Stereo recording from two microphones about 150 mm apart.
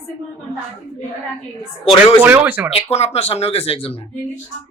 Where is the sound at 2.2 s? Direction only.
10° right (ahead or behind).